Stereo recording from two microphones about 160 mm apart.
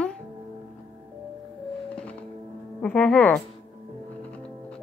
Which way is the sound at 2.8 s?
5° left (ahead or behind).